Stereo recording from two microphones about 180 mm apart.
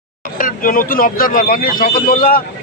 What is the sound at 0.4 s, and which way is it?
Speech, 50° left (ahead or behind).